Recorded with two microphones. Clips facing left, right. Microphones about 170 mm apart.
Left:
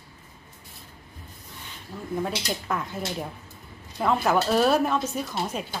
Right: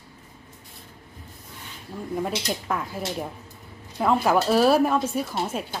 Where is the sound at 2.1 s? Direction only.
5° right (ahead or behind).